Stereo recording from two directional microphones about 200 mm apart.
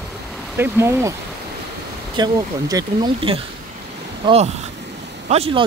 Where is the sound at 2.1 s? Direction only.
20° right (ahead or behind).